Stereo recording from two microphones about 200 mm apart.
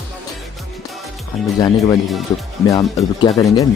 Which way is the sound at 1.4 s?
Centre (ahead or behind).